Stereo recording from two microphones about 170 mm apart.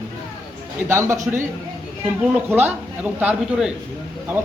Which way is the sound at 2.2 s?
10° right (ahead or behind).